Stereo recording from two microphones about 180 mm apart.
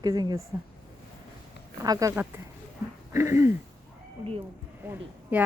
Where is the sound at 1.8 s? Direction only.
20° right (ahead or behind).